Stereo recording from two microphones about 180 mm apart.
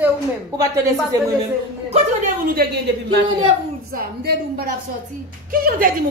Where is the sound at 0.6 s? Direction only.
15° right (ahead or behind).